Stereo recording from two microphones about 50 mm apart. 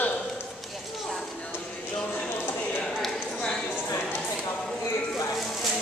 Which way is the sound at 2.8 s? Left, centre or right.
Centre.